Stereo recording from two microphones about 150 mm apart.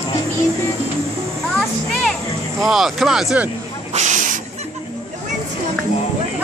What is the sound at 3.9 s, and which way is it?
Snake, 55° right (ahead or behind).